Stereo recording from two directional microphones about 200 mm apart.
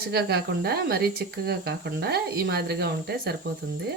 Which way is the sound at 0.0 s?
50° right (ahead or behind).